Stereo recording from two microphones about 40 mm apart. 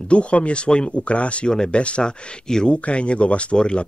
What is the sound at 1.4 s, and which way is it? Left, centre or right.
Speech, left.